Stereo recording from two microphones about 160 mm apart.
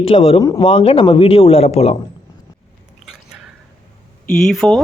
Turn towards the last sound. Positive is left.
turn(degrees=5)  # may be behind; listen again after turning